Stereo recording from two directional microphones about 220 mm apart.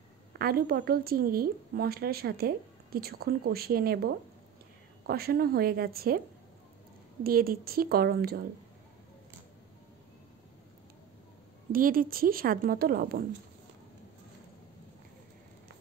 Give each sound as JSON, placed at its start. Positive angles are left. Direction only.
{"t": 0.3, "sound": "a woman's voice", "side_deg": -45}
{"t": 7.2, "sound": "a woman's voice", "side_deg": -45}
{"t": 11.7, "sound": "a woman's voice", "side_deg": -40}